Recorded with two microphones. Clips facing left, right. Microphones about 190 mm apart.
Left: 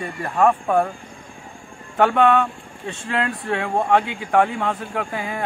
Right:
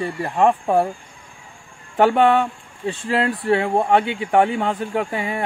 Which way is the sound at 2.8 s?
35° right (ahead or behind).